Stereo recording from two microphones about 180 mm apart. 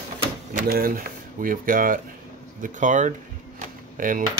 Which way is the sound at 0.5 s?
50° right (ahead or behind).